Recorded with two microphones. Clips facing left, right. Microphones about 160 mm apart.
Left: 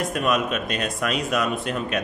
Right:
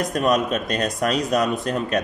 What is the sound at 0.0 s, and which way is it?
A man's voice, 40° right (ahead or behind).